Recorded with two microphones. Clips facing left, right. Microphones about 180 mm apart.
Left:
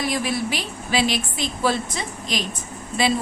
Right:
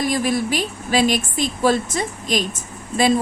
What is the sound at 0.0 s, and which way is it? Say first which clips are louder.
A woman's voice: right 4 dB; 45° right (ahead or behind).